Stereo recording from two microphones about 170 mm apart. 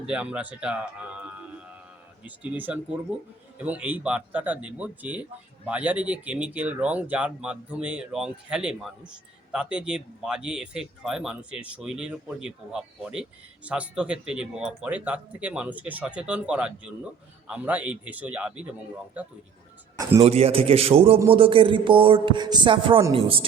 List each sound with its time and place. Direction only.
0.0 s speech: 5° right (ahead or behind)
20.0 s speech: 20° right (ahead or behind)
20.2 s a man's voice: 35° right (ahead or behind)